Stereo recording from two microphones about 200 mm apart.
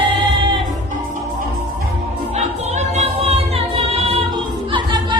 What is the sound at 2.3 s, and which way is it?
Music, 35° right (ahead or behind).